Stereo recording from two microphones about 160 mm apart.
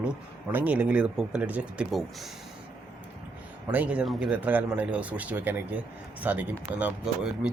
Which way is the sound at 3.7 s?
10° right (ahead or behind).